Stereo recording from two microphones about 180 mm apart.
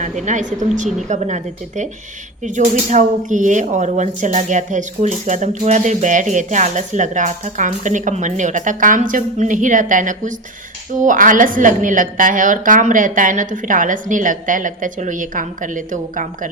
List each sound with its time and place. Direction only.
0.0 s a woman's voice: 45° right (ahead or behind)